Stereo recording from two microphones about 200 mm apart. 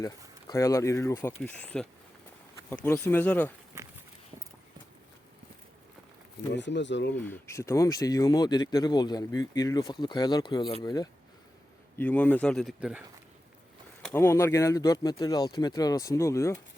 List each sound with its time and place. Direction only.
0.0 s speech: 15° left (ahead or behind)
2.8 s speech: 10° left (ahead or behind)
6.5 s speech: 60° left (ahead or behind)
7.2 s speech: 10° left (ahead or behind)
11.9 s speech: 5° left (ahead or behind)
14.0 s speech: 10° left (ahead or behind)